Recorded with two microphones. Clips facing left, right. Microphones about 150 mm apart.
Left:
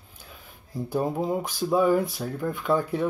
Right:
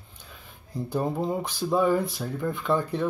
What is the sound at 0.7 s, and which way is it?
Speech, centre (ahead or behind).